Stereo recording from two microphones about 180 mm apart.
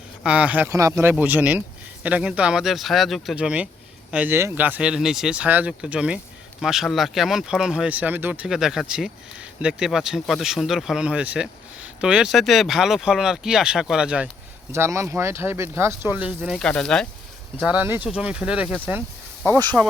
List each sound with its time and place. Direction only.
0.2 s speech: 5° right (ahead or behind)
14.7 s speech: 15° right (ahead or behind); by 17.1 s 5° left (ahead or behind)
17.6 s speech: 10° right (ahead or behind)